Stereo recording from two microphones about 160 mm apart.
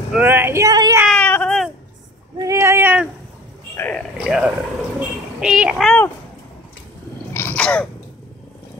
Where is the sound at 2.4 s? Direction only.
20° right (ahead or behind).